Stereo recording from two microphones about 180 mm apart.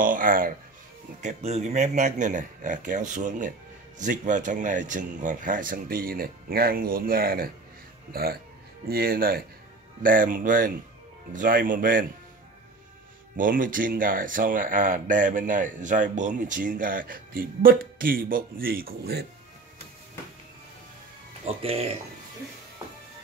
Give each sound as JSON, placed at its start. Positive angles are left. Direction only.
{"t": 0.0, "sound": "speech", "side_deg": -50}
{"t": 1.2, "sound": "speech", "side_deg": -40}
{"t": 13.4, "sound": "speech", "side_deg": -50}
{"t": 21.5, "sound": "speech", "side_deg": -35}